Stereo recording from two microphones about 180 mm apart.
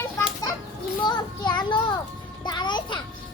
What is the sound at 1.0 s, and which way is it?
Speech, 25° left (ahead or behind).